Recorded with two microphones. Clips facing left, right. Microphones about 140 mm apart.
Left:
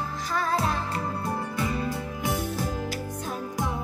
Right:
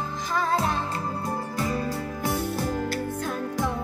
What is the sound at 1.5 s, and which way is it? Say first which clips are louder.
Music: right 1 dB; 40° right (ahead or behind).